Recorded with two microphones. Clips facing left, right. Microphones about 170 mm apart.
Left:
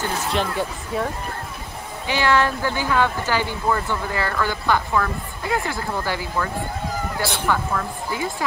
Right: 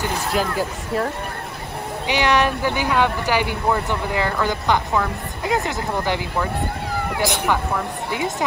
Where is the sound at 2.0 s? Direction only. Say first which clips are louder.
Right 1 dB; 15° right (ahead or behind).